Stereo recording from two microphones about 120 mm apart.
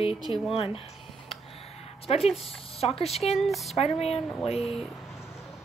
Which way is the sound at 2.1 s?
60° left (ahead or behind).